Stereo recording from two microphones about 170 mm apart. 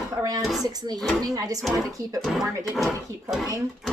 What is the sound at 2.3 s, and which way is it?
Speech, 5° right (ahead or behind).